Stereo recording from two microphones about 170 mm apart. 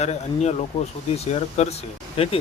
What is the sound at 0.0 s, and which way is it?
Speech, 40° left (ahead or behind).